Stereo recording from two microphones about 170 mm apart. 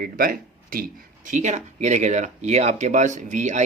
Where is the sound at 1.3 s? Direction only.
45° right (ahead or behind).